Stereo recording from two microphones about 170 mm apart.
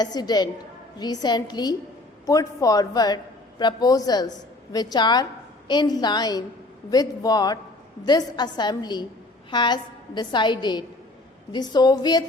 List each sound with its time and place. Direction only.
0.0 s a woman's voice: 25° left (ahead or behind)